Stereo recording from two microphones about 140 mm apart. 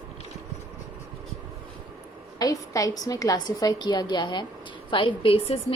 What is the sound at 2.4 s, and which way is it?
A woman's voice, 25° left (ahead or behind).